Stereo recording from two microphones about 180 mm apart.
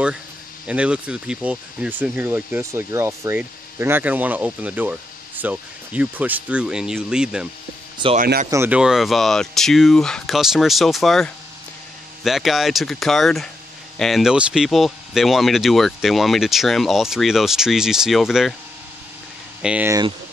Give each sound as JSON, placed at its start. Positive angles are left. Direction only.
{"t": 0.7, "sound": "speech", "side_deg": -5}
{"t": 8.2, "sound": "speech", "side_deg": -50}
{"t": 8.5, "sound": "speech", "side_deg": -10}
{"t": 19.6, "sound": "speech", "side_deg": -10}